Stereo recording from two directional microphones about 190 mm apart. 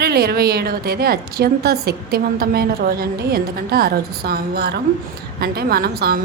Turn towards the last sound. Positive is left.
turn(degrees=-55)  # may be behind; listen again after turning